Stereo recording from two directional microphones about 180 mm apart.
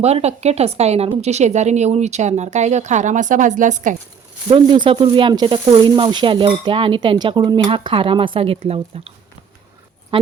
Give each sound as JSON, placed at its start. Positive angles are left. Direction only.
{"t": 0.0, "sound": "speech", "side_deg": -35}
{"t": 4.4, "sound": "speech", "side_deg": -25}